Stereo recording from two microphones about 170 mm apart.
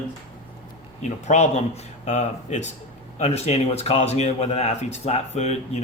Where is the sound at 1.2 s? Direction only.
40° left (ahead or behind).